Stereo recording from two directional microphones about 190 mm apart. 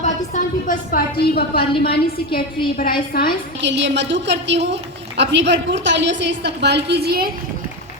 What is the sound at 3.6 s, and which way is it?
A woman's voice, 70° right (ahead or behind).